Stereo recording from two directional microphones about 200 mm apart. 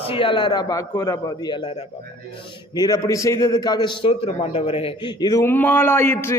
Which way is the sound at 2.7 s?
20° left (ahead or behind).